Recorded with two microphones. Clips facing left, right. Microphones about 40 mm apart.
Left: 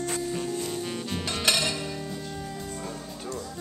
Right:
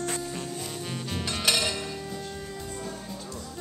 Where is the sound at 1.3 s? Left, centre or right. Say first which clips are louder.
Left 1 dB; centre.